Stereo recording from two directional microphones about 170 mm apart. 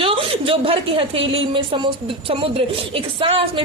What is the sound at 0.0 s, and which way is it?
A woman's voice, 30° right (ahead or behind).